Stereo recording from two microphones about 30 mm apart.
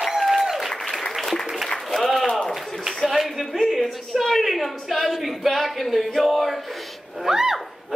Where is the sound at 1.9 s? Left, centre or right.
Centre.